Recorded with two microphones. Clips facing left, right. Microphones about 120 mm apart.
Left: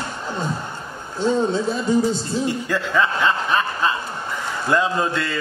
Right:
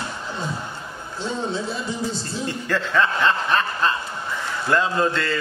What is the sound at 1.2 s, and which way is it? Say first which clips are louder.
Speech: left 7 dB; 45° left (ahead or behind).